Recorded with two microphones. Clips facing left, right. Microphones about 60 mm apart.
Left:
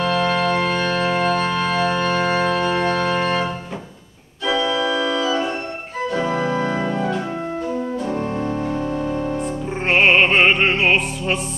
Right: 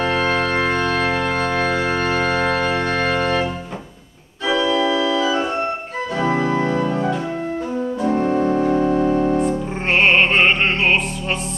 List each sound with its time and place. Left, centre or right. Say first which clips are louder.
0.0 s organ: even; right
2.5 s organ: even; right
6.2 s organ: right 4 dB; right
8.2 s music: right 6 dB; centre
9.4 s music: right 3 dB; centre